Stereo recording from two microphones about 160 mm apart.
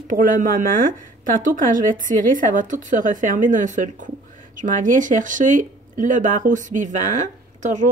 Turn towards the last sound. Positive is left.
turn(degrees=-50)  # may be behind; listen again after turning